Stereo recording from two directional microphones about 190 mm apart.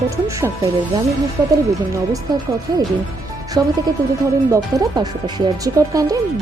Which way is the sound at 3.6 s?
20° right (ahead or behind).